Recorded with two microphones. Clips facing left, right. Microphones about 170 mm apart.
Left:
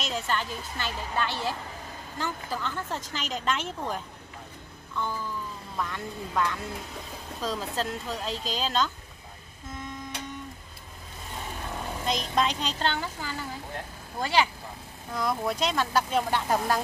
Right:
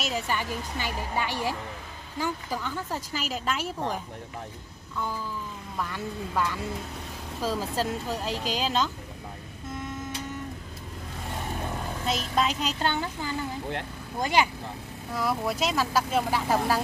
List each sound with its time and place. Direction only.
0.0 s speech: 10° right (ahead or behind)
5.8 s speech: 5° right (ahead or behind)
12.1 s speech: 5° right (ahead or behind)